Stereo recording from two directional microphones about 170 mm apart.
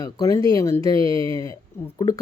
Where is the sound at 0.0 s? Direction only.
20° left (ahead or behind).